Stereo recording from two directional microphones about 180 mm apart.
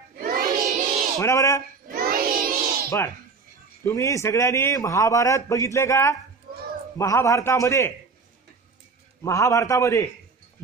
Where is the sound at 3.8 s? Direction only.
15° left (ahead or behind).